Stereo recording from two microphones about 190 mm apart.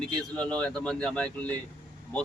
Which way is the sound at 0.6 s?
5° left (ahead or behind).